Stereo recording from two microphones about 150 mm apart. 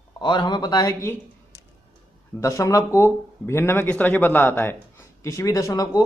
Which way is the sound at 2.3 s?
20° left (ahead or behind).